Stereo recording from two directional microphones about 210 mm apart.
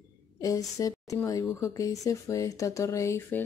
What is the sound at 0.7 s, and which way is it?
Speech, 15° left (ahead or behind).